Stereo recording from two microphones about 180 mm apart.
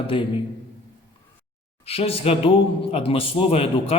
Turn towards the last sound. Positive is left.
turn(degrees=35)  # may be behind; listen again after turning